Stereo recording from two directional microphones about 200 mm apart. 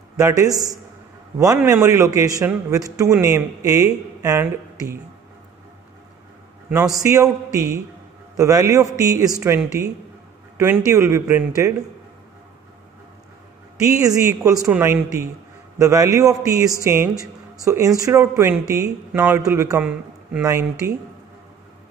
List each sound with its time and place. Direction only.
0.2 s a man's voice: 15° right (ahead or behind)
6.7 s a man's voice: 15° right (ahead or behind)
10.6 s a man's voice: 10° right (ahead or behind)
13.7 s a man's voice: 15° right (ahead or behind)